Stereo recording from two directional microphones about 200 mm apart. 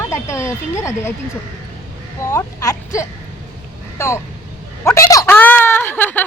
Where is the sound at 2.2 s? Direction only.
15° left (ahead or behind).